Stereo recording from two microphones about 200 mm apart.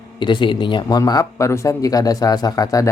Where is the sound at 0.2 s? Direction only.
25° left (ahead or behind).